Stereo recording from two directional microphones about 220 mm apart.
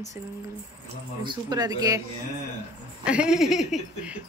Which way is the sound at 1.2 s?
15° right (ahead or behind).